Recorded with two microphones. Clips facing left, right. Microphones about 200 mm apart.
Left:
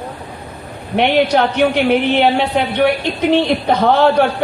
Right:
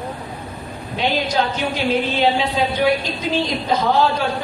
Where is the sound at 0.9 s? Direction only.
65° left (ahead or behind).